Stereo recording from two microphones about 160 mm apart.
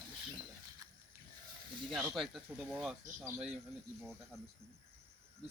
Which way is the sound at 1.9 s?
Centre (ahead or behind).